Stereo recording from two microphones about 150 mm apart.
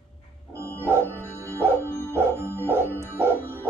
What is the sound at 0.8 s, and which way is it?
Music, 15° right (ahead or behind).